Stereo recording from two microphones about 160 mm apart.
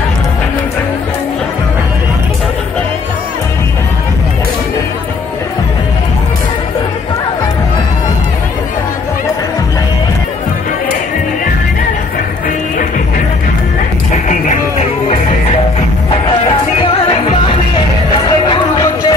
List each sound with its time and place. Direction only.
14.1 s music: 50° left (ahead or behind)
18.5 s music: 25° left (ahead or behind)